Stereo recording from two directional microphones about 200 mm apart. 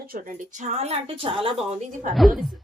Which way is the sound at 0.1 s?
40° right (ahead or behind).